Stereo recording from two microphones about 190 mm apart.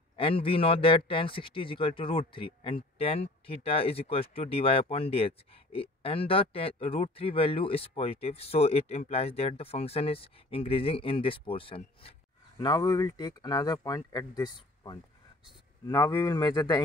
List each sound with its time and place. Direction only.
0.1 s a man's voice: 30° left (ahead or behind)